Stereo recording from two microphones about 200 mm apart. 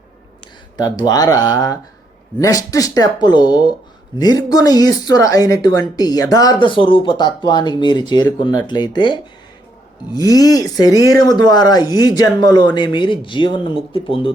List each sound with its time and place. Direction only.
0.8 s speech: 20° left (ahead or behind)